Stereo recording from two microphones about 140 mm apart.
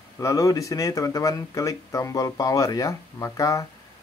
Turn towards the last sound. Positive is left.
turn(degrees=25)  # may be behind; listen again after turning